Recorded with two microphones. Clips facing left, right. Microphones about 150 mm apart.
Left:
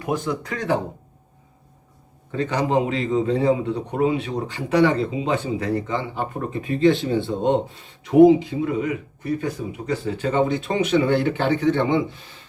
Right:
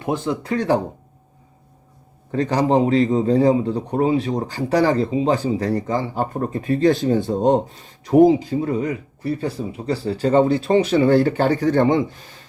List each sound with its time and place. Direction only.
0.0 s a man's voice: 30° right (ahead or behind)
2.3 s a man's voice: 35° right (ahead or behind)